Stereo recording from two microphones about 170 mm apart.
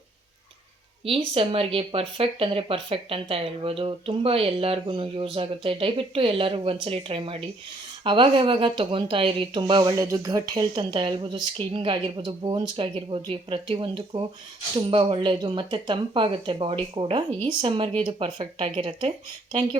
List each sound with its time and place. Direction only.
1.0 s speech: 35° right (ahead or behind)